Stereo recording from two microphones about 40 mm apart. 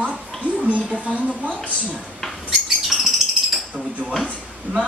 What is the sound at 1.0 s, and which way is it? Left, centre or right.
Speech, right.